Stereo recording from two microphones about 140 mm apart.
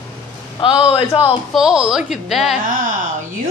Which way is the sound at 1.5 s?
5° right (ahead or behind).